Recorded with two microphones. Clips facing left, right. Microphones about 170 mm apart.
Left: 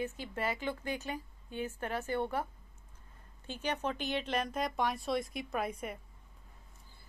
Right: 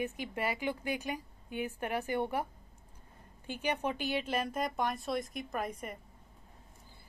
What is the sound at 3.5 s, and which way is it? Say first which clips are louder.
Speech: right 2 dB; 10° right (ahead or behind).